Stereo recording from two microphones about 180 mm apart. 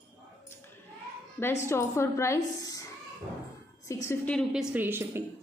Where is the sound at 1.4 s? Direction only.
15° left (ahead or behind).